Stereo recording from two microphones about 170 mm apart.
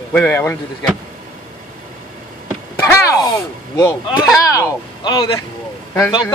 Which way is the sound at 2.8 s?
15° left (ahead or behind).